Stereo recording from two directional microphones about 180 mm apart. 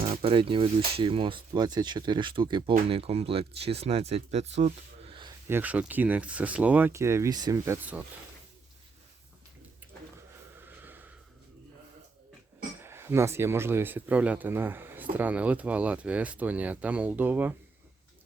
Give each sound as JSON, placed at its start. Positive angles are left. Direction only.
{"t": 0.1, "sound": "speech", "side_deg": -30}
{"t": 5.5, "sound": "speech", "side_deg": -10}
{"t": 10.6, "sound": "snort", "side_deg": -10}
{"t": 12.8, "sound": "speech", "side_deg": -15}